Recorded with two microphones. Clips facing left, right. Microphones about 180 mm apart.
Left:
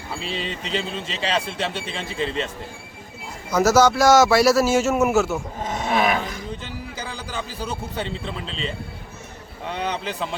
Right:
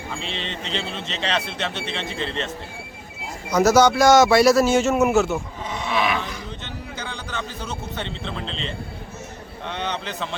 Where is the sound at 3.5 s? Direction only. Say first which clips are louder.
Right 1 dB; 5° left (ahead or behind).